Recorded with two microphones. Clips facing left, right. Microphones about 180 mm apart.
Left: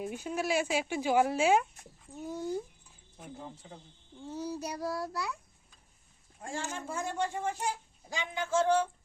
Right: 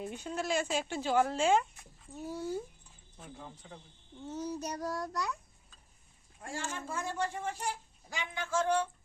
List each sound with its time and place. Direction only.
0.0 s speech: 5° left (ahead or behind); by 3.8 s 25° left (ahead or behind)
4.3 s a child's voice: 10° left (ahead or behind)
6.4 s speech: 20° left (ahead or behind)